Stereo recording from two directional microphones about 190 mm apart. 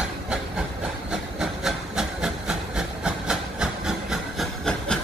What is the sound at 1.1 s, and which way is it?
Hiss, 5° right (ahead or behind).